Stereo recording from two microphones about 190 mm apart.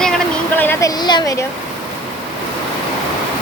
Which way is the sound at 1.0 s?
20° left (ahead or behind).